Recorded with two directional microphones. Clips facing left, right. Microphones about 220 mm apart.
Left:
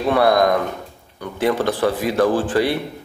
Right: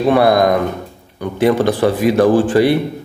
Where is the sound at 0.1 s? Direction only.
10° right (ahead or behind).